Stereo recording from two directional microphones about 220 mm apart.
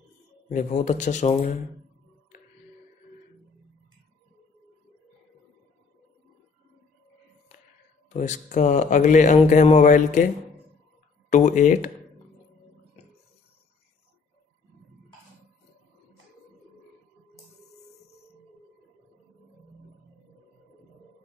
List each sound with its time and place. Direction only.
0.5 s a man's voice: 35° left (ahead or behind)
8.1 s a man's voice: 35° left (ahead or behind)
11.2 s a man's voice: 35° left (ahead or behind)